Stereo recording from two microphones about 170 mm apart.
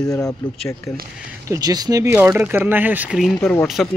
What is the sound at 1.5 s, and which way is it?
Speech, 20° right (ahead or behind).